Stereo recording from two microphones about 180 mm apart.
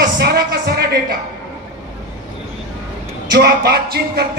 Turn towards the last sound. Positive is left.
turn(degrees=-65)  # may be behind; listen again after turning